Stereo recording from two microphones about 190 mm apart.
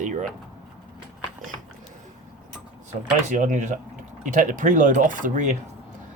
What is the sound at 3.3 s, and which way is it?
Speech, 40° right (ahead or behind).